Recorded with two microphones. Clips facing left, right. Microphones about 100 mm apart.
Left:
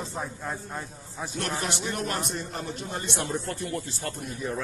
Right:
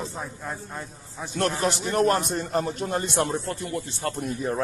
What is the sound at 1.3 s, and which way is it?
A man's voice, 40° right (ahead or behind).